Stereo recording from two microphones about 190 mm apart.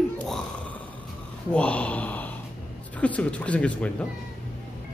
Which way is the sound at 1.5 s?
5° left (ahead or behind).